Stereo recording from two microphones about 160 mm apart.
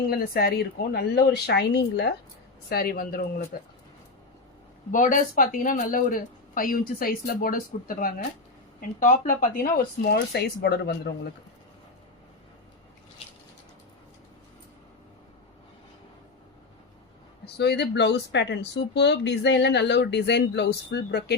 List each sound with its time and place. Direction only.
0.1 s speech: 75° left (ahead or behind)
2.6 s speech: 70° left (ahead or behind)
4.9 s speech: 55° left (ahead or behind); by 11.1 s 90° left
17.4 s speech: 90° left